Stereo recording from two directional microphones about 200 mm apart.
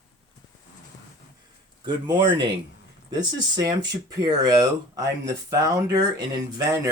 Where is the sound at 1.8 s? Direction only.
20° right (ahead or behind).